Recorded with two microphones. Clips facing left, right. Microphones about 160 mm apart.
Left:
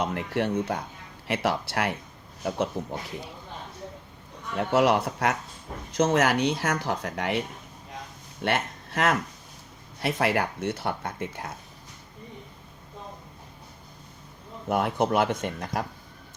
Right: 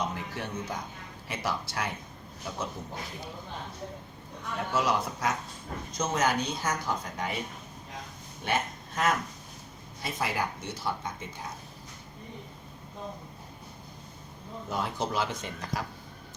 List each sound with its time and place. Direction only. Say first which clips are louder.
0.0 s speech: left 7 dB; 70° left (ahead or behind)
4.5 s speech: left 7 dB; 65° left (ahead or behind)
8.4 s speech: left 3 dB; 70° left (ahead or behind)
14.7 s speech: left 8 dB; 60° left (ahead or behind)